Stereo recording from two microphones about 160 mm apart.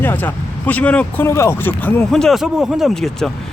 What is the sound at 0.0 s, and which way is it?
Speech, 10° left (ahead or behind).